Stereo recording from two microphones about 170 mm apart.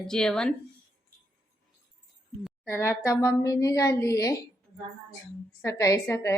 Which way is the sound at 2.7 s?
15° left (ahead or behind).